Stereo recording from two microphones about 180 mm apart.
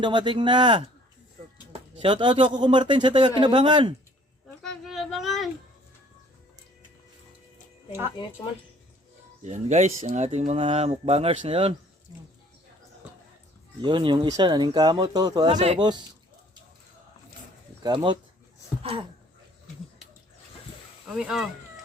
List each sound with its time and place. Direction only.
0.0 s speech: 25° right (ahead or behind)
4.6 s child singing: centre (ahead or behind)
9.4 s speech: 40° right (ahead or behind)
13.8 s speech: 25° right (ahead or behind)
15.5 s speech: 35° right (ahead or behind)
15.8 s speech: 25° right (ahead or behind)
17.8 s speech: 25° right (ahead or behind)
21.1 s speech: 5° right (ahead or behind)